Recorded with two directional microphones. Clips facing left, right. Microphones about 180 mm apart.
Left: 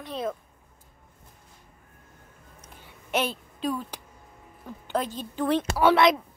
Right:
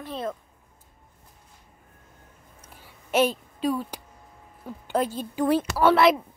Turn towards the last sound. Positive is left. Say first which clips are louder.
# right 1 dB
turn(degrees=0)  # may be behind; listen again after turning